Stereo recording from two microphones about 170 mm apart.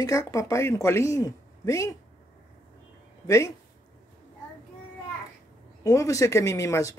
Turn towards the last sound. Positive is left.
turn(degrees=20)  # may be behind; listen again after turning